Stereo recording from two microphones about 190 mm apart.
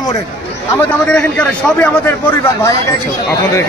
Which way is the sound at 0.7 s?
5° left (ahead or behind).